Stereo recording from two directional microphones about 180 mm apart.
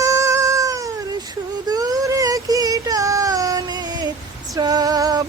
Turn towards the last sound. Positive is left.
turn(degrees=-20)  # may be behind; listen again after turning